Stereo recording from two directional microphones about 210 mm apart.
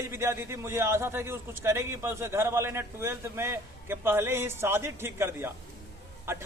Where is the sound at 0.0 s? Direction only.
10° right (ahead or behind).